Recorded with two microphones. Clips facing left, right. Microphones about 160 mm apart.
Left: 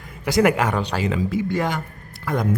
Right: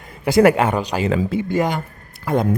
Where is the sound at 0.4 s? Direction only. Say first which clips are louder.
Right 4 dB; 25° right (ahead or behind).